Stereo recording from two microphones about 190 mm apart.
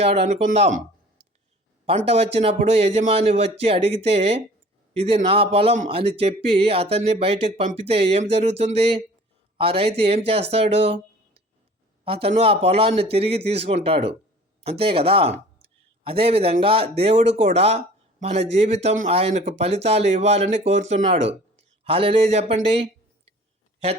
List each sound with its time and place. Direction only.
0.0 s a man's voice: 35° right (ahead or behind)
2.0 s a man's voice: 30° right (ahead or behind)
12.0 s a man's voice: 30° right (ahead or behind)